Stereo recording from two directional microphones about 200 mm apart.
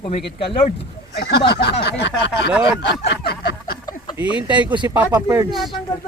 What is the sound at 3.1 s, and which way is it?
Speech, 55° left (ahead or behind).